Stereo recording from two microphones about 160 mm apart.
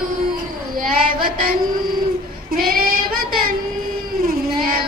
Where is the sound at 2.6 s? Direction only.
65° right (ahead or behind).